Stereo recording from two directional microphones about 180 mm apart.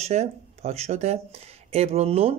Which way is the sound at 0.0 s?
35° right (ahead or behind).